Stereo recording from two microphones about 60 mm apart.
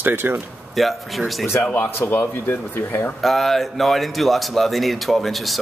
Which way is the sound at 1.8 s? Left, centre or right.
Left.